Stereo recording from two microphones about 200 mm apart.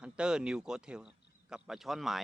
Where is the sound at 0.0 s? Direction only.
5° right (ahead or behind).